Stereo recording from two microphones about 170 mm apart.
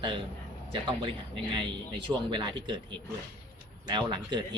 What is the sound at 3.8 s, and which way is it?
Speech, 25° right (ahead or behind).